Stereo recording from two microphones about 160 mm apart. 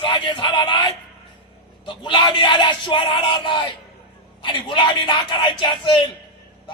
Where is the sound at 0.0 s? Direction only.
30° left (ahead or behind).